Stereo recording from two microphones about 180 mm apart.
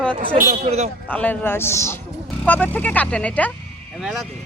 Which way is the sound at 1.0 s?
10° left (ahead or behind).